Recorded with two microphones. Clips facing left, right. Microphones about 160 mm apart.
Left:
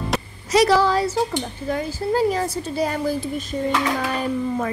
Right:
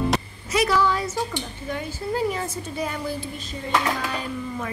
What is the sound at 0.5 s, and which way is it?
A woman's voice, 35° left (ahead or behind).